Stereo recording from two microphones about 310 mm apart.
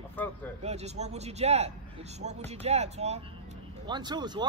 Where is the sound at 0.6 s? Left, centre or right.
Right.